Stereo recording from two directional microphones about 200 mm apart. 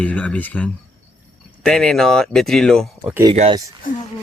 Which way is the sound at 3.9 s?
45° left (ahead or behind).